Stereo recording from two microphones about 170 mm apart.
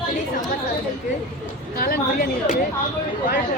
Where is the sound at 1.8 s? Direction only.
55° left (ahead or behind).